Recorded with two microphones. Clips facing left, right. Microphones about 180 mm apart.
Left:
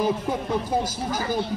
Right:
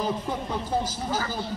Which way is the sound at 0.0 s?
10° left (ahead or behind).